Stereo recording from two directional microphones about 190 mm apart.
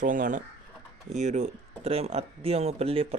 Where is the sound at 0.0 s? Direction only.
45° right (ahead or behind).